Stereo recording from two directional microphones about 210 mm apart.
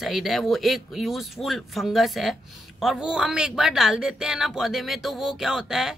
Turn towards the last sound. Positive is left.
turn(degrees=0)  # may be behind; listen again after turning